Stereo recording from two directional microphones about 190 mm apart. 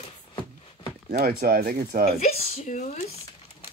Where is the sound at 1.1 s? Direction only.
55° right (ahead or behind).